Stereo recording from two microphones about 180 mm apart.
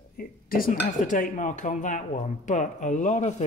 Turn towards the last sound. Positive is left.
turn(degrees=45)  # may be behind; listen again after turning